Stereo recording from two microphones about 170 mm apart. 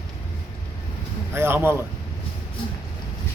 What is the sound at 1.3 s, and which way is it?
Speech, 15° right (ahead or behind).